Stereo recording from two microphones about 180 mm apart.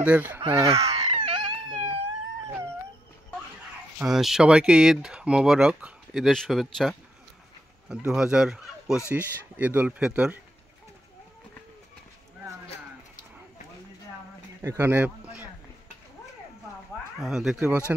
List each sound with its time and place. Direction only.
0.0 s speech: 10° right (ahead or behind)
0.7 s a sound: 35° right (ahead or behind)
4.0 s speech: centre (ahead or behind)
14.6 s speech: 15° right (ahead or behind)
17.2 s speech: centre (ahead or behind)